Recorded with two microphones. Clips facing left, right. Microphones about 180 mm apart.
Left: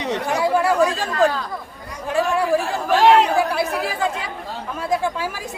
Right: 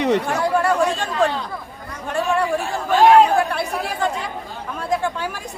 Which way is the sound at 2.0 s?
5° left (ahead or behind).